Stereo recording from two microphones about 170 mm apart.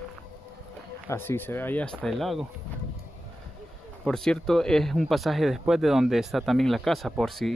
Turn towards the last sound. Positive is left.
turn(degrees=0)  # may be behind; listen again after turning